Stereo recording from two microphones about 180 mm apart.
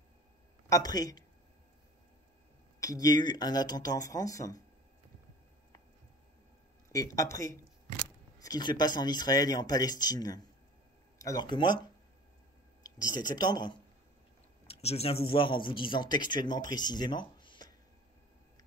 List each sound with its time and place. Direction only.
0.7 s speech: 20° left (ahead or behind)
2.8 s speech: 20° left (ahead or behind)
6.9 s speech: 20° left (ahead or behind)
14.7 s speech: 35° left (ahead or behind)